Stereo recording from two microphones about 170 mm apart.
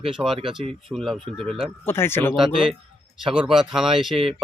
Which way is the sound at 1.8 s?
15° left (ahead or behind).